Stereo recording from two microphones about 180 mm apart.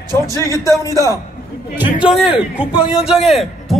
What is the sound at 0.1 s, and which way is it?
A man's voice, 20° right (ahead or behind).